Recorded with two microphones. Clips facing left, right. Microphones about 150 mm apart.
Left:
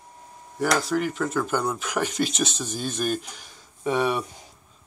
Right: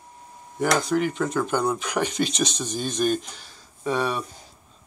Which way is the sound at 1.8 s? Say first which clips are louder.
Right 1 dB; 5° left (ahead or behind).